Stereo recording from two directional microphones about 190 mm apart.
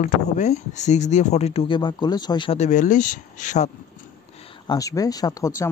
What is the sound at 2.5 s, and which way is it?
Speech, 40° left (ahead or behind).